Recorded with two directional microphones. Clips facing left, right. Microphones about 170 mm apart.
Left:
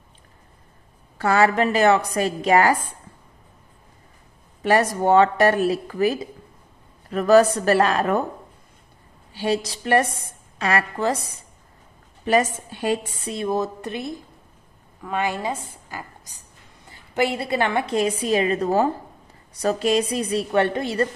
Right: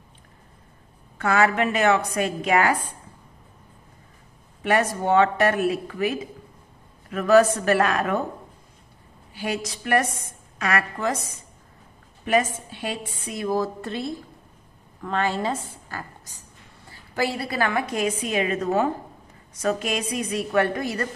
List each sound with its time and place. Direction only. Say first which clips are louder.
1.1 s a woman's voice: left 2 dB; 35° left (ahead or behind)
4.6 s a woman's voice: left 3 dB; 35° left (ahead or behind)
9.3 s a woman's voice: left 5 dB; 30° left (ahead or behind)
12.3 s a woman's voice: left 2 dB; 40° left (ahead or behind)
13.3 s a woman's voice: left 1 dB; 25° left (ahead or behind)